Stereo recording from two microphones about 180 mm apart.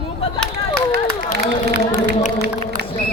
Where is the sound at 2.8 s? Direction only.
65° right (ahead or behind).